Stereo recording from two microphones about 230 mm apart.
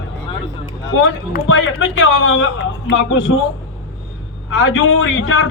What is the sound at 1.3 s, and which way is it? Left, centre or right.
A man's voice, left.